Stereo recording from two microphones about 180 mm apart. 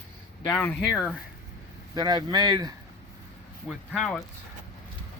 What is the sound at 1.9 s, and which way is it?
Speech, 20° right (ahead or behind).